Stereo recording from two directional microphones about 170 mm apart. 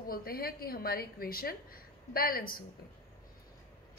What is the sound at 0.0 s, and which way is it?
A woman's voice, 60° left (ahead or behind).